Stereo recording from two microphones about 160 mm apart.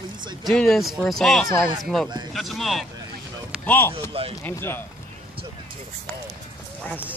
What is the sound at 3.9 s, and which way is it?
Speech, 35° right (ahead or behind).